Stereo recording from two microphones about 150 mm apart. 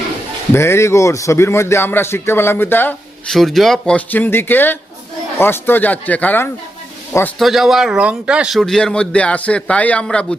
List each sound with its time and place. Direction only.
0.5 s a man's voice: 15° left (ahead or behind)
3.2 s a man's voice: centre (ahead or behind)
7.3 s speech: centre (ahead or behind)